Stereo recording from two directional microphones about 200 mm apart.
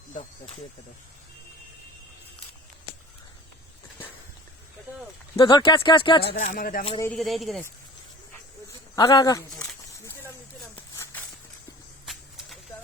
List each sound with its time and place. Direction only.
0.1 s speech: 35° left (ahead or behind)
5.4 s speech: 25° left (ahead or behind)
6.3 s speech: 40° left (ahead or behind)
7.0 s speech: 5° left (ahead or behind)
9.0 s speech: 20° left (ahead or behind)
9.6 s a sound: 10° left (ahead or behind)